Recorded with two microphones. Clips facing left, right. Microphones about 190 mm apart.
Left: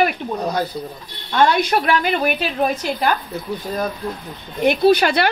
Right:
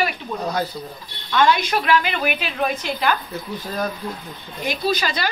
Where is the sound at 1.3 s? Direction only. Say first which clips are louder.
Left 2 dB; 45° left (ahead or behind).